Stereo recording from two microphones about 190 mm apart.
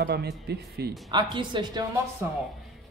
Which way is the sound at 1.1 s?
25° right (ahead or behind).